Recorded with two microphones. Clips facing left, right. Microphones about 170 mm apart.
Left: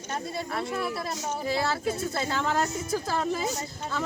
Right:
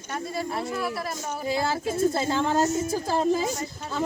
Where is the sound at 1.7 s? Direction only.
25° right (ahead or behind).